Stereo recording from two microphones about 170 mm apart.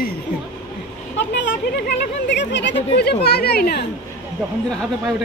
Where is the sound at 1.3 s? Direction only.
80° left; by 3.8 s 65° left (ahead or behind).